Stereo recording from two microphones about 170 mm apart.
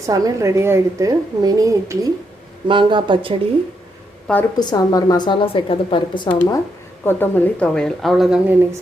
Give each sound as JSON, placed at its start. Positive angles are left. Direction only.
{"t": 0.0, "sound": "a woman's voice", "side_deg": -20}
{"t": 4.6, "sound": "a woman's voice", "side_deg": 20}
{"t": 6.2, "sound": "a woman's voice", "side_deg": 10}